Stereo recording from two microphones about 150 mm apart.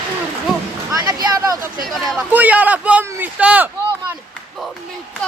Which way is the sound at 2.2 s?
10° right (ahead or behind).